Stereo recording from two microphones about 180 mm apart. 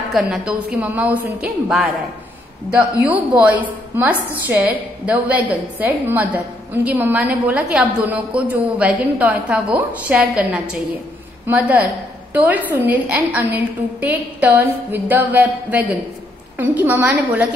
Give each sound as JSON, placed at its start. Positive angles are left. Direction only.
{"t": 0.1, "sound": "a woman's voice", "side_deg": -5}
{"t": 3.1, "sound": "a woman's voice", "side_deg": -10}